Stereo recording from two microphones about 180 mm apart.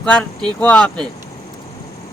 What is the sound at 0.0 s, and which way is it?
Speech, 5° left (ahead or behind).